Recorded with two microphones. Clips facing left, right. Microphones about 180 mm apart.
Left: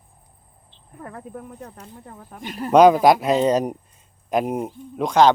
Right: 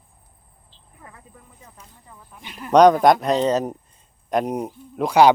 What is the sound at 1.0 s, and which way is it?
Speech, 60° left (ahead or behind).